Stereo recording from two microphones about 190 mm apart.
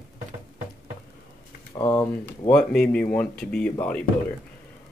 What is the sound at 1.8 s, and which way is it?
Speech, 10° left (ahead or behind).